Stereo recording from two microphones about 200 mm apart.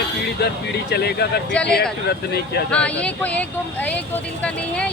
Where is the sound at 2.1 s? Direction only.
55° left (ahead or behind).